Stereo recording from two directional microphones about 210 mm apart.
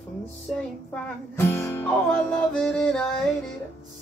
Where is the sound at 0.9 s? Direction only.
10° left (ahead or behind).